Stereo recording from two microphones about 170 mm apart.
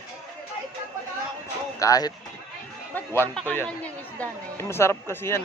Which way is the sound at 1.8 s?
20° left (ahead or behind).